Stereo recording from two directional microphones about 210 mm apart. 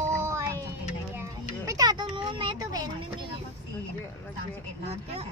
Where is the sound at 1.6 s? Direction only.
20° right (ahead or behind).